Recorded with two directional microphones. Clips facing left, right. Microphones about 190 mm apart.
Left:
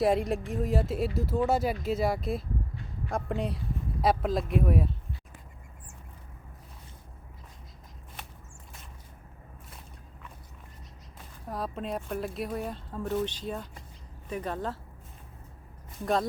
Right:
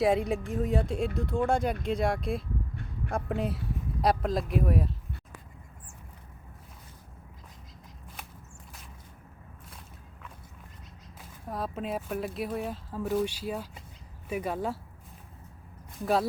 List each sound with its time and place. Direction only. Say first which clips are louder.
0.0 s speech: even; centre (ahead or behind)
11.4 s speech: right 1 dB; centre (ahead or behind)
16.0 s speech: right 1 dB; 5° right (ahead or behind)